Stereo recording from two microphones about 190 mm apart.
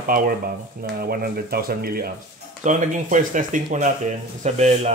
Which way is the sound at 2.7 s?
40° right (ahead or behind).